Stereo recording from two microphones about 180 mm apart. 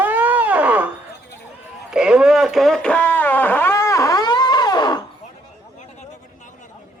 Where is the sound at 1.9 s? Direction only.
5° right (ahead or behind); by 5.0 s 25° left (ahead or behind).